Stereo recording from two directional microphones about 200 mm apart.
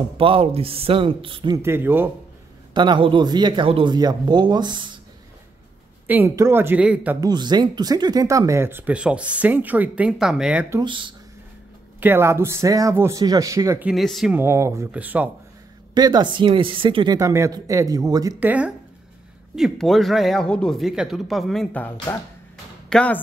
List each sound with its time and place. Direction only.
0.2 s speech: 30° right (ahead or behind)
1.6 s speech: 10° right (ahead or behind)
2.7 s speech: 20° right (ahead or behind)
6.0 s speech: 10° right (ahead or behind)
7.2 s speech: 20° right (ahead or behind)
10.8 s speech: 25° right (ahead or behind)
12.0 s speech: 10° right (ahead or behind)
13.8 s speech: centre (ahead or behind)
15.9 s speech: 20° right (ahead or behind); by 21.9 s 5° left (ahead or behind)
21.9 s speech: 15° left (ahead or behind)